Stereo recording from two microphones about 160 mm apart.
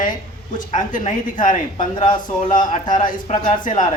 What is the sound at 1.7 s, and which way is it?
Speech, 35° left (ahead or behind).